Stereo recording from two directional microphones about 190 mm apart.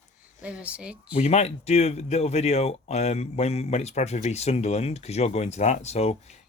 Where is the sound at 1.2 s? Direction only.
35° left (ahead or behind).